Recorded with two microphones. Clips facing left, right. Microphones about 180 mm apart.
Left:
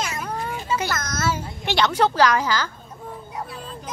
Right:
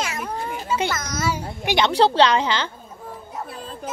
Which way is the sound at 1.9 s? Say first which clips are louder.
Right 3 dB; 30° right (ahead or behind).